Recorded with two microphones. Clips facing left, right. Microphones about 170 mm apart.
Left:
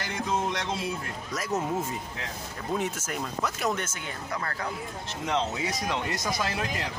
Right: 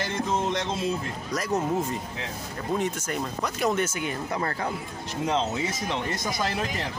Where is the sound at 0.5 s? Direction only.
20° right (ahead or behind).